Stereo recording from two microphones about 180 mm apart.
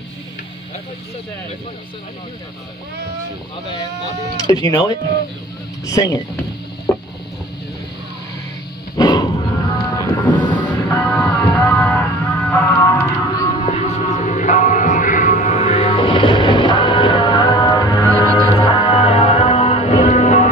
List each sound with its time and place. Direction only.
4.5 s speech: 20° left (ahead or behind)
6.9 s a sound: 15° left (ahead or behind)
8.9 s dog: 25° left (ahead or behind)
10.5 s music: 10° left (ahead or behind)
13.6 s music: 35° left (ahead or behind)